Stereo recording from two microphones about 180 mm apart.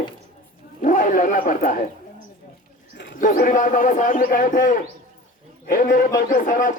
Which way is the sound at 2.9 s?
70° left (ahead or behind).